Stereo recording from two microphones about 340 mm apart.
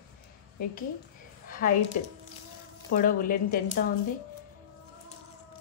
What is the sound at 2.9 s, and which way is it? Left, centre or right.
Speech, left.